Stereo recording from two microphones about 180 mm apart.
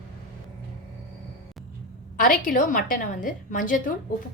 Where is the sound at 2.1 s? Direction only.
50° left (ahead or behind).